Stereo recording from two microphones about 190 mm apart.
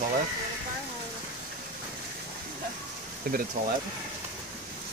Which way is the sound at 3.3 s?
50° right (ahead or behind).